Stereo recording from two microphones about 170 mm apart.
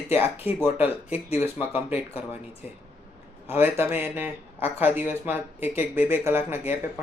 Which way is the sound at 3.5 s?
10° right (ahead or behind).